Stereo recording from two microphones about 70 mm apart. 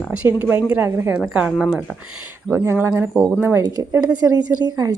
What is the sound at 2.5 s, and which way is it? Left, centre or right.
A woman's voice, right.